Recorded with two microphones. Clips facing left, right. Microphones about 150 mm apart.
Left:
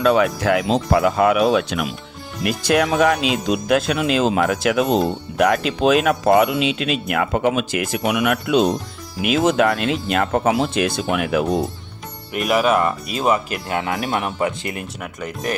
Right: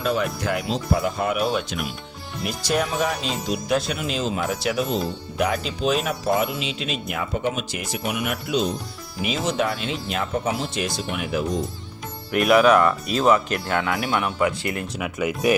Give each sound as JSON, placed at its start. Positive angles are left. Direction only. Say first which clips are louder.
{"t": 0.0, "sound": "speech", "louder": "left 8 dB", "side_deg": 80}
{"t": 0.4, "sound": "speech", "louder": "left 6 dB", "side_deg": 90}
{"t": 6.2, "sound": "speech", "louder": "left 8 dB", "side_deg": 75}
{"t": 9.2, "sound": "speech", "louder": "left 7 dB", "side_deg": 65}
{"t": 12.4, "sound": "speech", "louder": "right 2 dB", "side_deg": 0}
{"t": 13.7, "sound": "speech", "louder": "left 2 dB", "side_deg": 25}
{"t": 14.9, "sound": "speech", "louder": "right 4 dB", "side_deg": -5}